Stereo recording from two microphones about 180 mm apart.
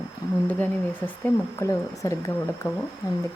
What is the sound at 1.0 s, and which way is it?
Speech, 10° left (ahead or behind).